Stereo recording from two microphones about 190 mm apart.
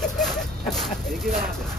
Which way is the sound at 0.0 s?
Centre (ahead or behind).